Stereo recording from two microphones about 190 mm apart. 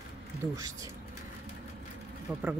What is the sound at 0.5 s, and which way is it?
Speech, 15° right (ahead or behind).